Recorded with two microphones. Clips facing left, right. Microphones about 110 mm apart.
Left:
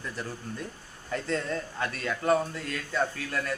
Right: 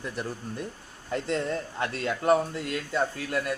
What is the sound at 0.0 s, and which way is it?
A man's voice, 20° right (ahead or behind).